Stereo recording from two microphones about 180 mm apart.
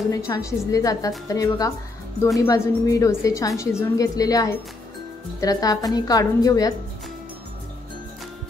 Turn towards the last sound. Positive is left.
turn(degrees=20)  # may be behind; listen again after turning